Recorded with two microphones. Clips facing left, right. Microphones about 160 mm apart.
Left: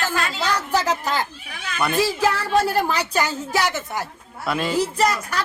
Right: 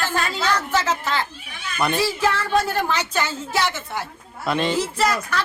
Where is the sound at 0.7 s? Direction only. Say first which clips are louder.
Left 1 dB; 40° left (ahead or behind).